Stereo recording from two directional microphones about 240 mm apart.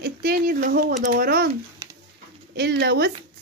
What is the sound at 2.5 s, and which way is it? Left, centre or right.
Speech, right.